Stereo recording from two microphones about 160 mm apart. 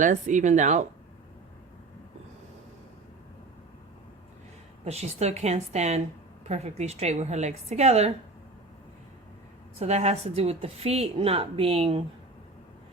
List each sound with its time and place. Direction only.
0.0 s a woman's voice: 50° right (ahead or behind)
4.9 s a woman's voice: 40° right (ahead or behind)
9.7 s a woman's voice: 40° right (ahead or behind)